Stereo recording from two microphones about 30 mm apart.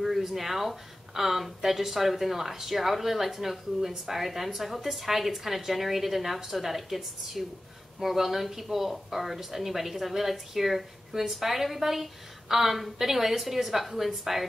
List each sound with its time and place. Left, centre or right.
0.2 s a woman's voice: centre